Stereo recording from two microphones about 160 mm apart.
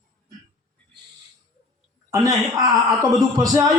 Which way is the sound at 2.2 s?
25° right (ahead or behind).